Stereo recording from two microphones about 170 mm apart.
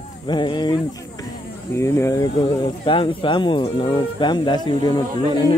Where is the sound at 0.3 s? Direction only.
25° left (ahead or behind).